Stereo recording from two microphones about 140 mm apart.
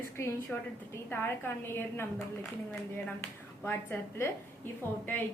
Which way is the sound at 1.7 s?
15° left (ahead or behind).